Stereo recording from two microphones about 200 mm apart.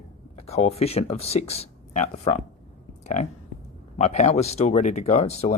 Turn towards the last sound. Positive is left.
turn(degrees=30)  # may be behind; listen again after turning